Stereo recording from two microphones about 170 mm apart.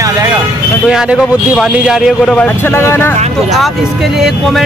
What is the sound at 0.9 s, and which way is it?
Speech, 5° right (ahead or behind).